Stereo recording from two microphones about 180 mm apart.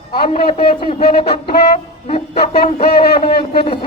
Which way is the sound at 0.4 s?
30° left (ahead or behind).